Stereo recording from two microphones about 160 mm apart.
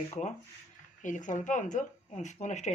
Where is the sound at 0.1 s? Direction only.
45° left (ahead or behind).